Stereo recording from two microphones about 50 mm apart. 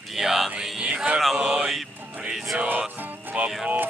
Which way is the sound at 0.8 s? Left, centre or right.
Right.